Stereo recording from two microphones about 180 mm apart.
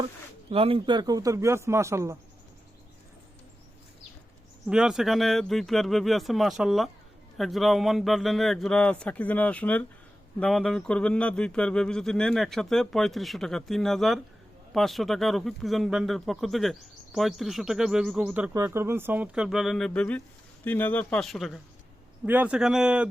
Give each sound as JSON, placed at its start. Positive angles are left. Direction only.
{"t": 0.5, "sound": "speech", "side_deg": -30}
{"t": 4.7, "sound": "speech", "side_deg": -5}